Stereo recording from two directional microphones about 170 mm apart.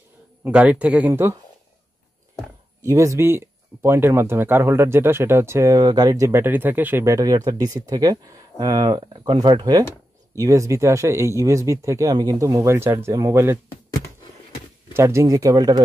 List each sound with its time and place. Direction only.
0.4 s speech: 10° right (ahead or behind)
2.8 s speech: 15° right (ahead or behind)
15.0 s speech: 15° right (ahead or behind)